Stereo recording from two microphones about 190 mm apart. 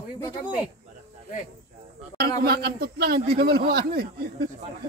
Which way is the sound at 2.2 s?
55° right (ahead or behind).